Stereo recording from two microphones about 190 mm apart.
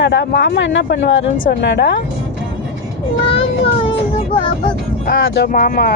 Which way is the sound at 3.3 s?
30° left (ahead or behind).